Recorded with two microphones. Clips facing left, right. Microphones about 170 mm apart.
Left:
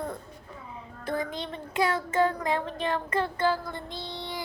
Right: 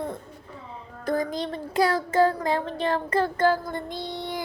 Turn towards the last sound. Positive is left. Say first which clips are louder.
# right 5 dB
turn(degrees=-50)  # may be behind; listen again after turning